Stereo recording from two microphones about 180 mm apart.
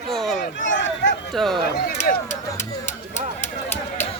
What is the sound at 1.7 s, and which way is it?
Speech, 55° left (ahead or behind).